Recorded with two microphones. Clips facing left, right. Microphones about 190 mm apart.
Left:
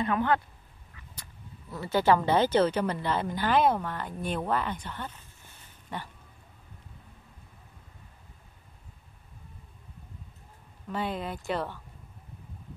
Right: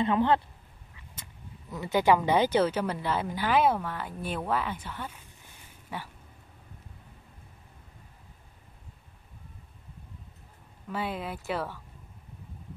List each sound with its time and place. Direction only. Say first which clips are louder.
0.0 s speech: right 2 dB; 25° right (ahead or behind); by 6.1 s 5° right (ahead or behind)
10.9 s speech: left 1 dB; 5° right (ahead or behind)